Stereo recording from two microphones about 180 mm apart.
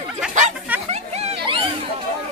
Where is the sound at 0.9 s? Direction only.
35° right (ahead or behind).